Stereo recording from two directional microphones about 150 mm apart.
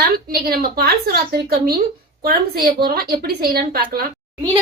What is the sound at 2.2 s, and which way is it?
A woman's voice, 75° right (ahead or behind).